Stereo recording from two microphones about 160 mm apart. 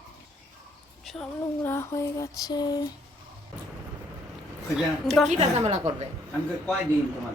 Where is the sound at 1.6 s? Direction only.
15° left (ahead or behind).